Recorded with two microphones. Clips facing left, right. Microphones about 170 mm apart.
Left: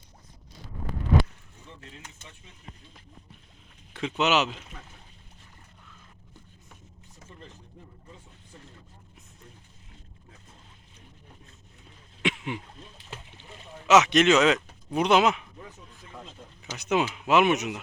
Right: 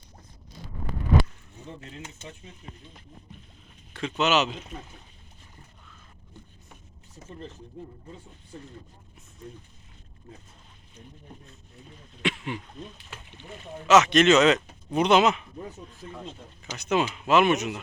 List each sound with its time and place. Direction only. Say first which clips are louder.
4.2 s speech: right 1 dB; 10° left (ahead or behind)
12.2 s throat clearing: even; 15° left (ahead or behind)
12.9 s speech: left 2 dB; 30° left (ahead or behind)
13.8 s speech: right 1 dB; 15° left (ahead or behind)
16.6 s speech: even; 15° left (ahead or behind)